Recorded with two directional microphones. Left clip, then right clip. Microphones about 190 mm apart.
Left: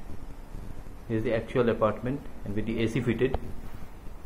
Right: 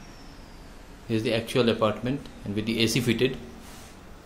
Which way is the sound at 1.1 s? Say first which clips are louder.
Right 2 dB; 20° right (ahead or behind).